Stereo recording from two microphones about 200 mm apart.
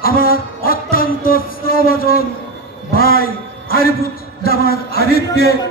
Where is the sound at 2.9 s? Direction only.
50° left (ahead or behind).